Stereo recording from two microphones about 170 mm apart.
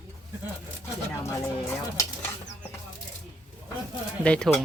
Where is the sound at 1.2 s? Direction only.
20° left (ahead or behind).